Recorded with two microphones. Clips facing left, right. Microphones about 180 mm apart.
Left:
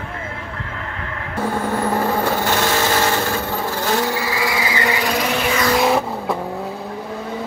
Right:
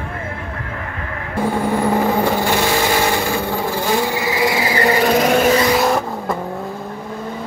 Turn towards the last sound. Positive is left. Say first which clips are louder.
# even
turn(degrees=0)  # may be behind; listen again after turning